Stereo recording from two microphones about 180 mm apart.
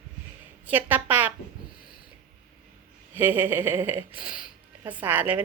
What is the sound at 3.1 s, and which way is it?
Speech, 10° right (ahead or behind).